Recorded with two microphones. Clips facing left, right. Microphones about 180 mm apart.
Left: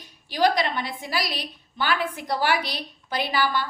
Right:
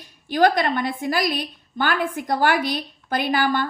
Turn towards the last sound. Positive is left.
turn(degrees=-50)  # may be behind; listen again after turning